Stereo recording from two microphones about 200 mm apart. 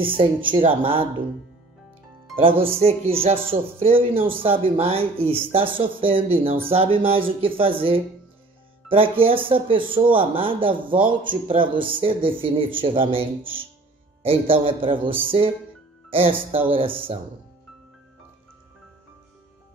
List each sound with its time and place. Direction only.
0.6 s speech: 25° right (ahead or behind)
2.4 s speech: 30° right (ahead or behind)
14.2 s speech: 30° right (ahead or behind)